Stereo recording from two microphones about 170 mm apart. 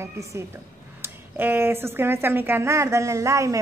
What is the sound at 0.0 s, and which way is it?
A woman's voice, 15° right (ahead or behind).